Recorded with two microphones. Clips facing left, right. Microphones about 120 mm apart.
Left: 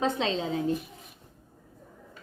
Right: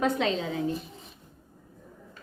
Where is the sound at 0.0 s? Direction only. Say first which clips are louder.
Right 1 dB; 25° left (ahead or behind).